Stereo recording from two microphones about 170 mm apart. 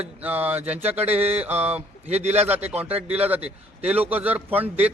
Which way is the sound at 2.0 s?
40° right (ahead or behind).